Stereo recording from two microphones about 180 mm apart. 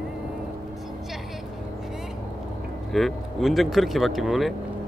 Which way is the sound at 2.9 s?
Centre (ahead or behind).